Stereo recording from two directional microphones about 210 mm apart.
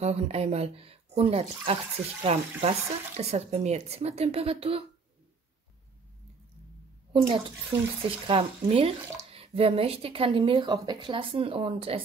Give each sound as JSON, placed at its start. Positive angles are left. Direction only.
{"t": 0.0, "sound": "speech", "side_deg": -30}
{"t": 7.1, "sound": "a child's voice", "side_deg": -25}